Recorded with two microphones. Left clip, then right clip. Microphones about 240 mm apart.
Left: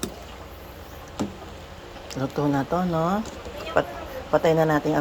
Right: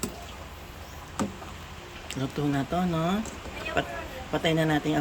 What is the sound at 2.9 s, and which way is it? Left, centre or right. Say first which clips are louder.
Speech: left 5 dB; centre.